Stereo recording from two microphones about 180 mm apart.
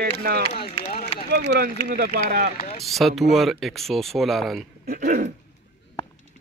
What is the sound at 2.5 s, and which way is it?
Speech, 30° left (ahead or behind).